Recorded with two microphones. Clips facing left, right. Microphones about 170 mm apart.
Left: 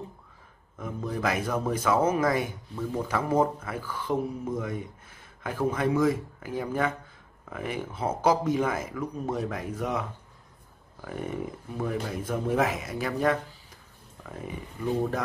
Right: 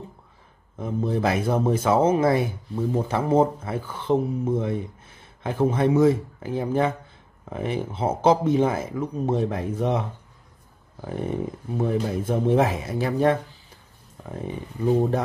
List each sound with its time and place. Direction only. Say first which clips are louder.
0.7 s speech: right 7 dB; 30° right (ahead or behind)